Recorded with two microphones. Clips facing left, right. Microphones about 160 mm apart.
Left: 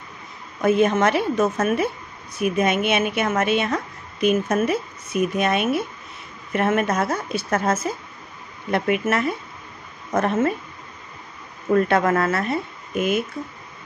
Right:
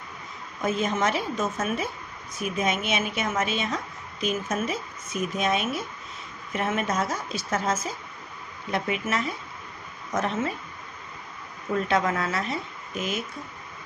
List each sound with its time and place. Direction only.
0.6 s a woman's voice: 65° left (ahead or behind)
11.7 s a woman's voice: 55° left (ahead or behind)